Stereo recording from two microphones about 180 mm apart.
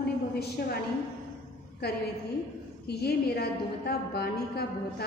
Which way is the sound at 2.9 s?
65° left (ahead or behind).